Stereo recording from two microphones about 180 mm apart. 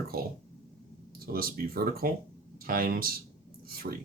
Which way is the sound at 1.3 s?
55° right (ahead or behind).